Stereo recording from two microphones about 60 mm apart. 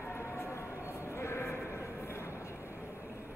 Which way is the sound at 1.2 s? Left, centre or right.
Left.